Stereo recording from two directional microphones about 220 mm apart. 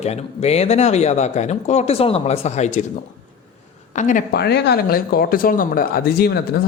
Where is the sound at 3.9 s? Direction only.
35° left (ahead or behind).